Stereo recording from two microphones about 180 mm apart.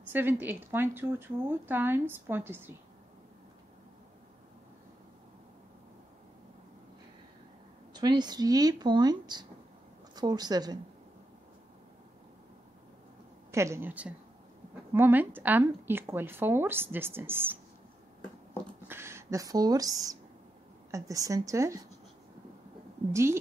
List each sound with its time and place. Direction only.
0.1 s speech: 10° right (ahead or behind)
7.9 s speech: 25° right (ahead or behind)
13.5 s speech: 15° right (ahead or behind)
18.9 s speech: 15° right (ahead or behind)